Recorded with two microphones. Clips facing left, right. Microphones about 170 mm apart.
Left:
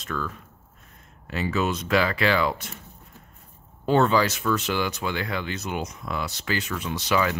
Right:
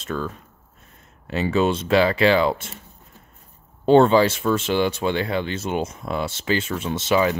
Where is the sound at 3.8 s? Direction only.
25° right (ahead or behind).